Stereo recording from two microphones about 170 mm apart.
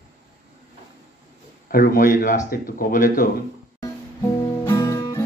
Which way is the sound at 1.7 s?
60° left (ahead or behind).